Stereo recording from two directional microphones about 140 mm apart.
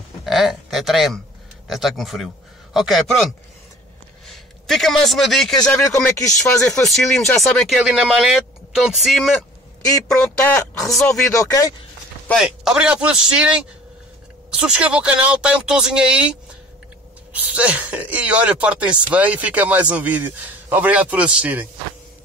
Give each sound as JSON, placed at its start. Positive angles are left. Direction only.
{"t": 0.2, "sound": "a man's voice", "side_deg": 0}
{"t": 6.1, "sound": "speech", "side_deg": 25}
{"t": 6.8, "sound": "speech", "side_deg": 5}
{"t": 11.0, "sound": "speech", "side_deg": 20}
{"t": 12.4, "sound": "speech", "side_deg": -5}